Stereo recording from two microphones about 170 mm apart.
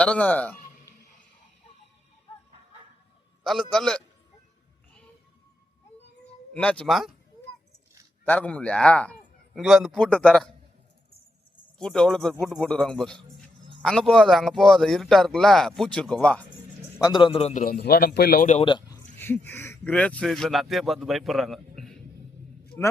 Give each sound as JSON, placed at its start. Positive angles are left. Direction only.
{"t": 0.0, "sound": "speech", "side_deg": 5}
{"t": 3.4, "sound": "speech", "side_deg": 0}
{"t": 6.2, "sound": "speech", "side_deg": 10}
{"t": 8.2, "sound": "speech", "side_deg": 10}
{"t": 11.8, "sound": "speech", "side_deg": 5}
{"t": 17.0, "sound": "a man's voice", "side_deg": 25}
{"t": 17.5, "sound": "a man's voice", "side_deg": 45}
{"t": 17.7, "sound": "a man's voice", "side_deg": 65}
{"t": 18.6, "sound": "speech", "side_deg": 30}
{"t": 19.2, "sound": "speech", "side_deg": 15}